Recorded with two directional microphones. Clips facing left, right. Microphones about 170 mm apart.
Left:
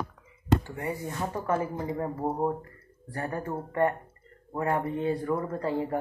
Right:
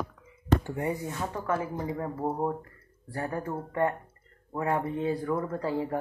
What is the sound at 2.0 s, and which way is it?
Speech, 5° left (ahead or behind).